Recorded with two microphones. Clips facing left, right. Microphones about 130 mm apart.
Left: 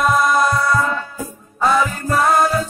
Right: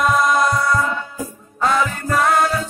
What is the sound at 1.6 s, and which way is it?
Music, 10° left (ahead or behind).